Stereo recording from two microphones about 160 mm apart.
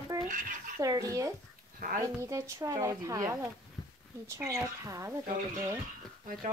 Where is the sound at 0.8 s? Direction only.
20° right (ahead or behind).